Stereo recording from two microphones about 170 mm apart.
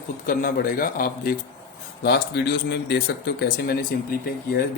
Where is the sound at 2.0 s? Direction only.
75° left (ahead or behind).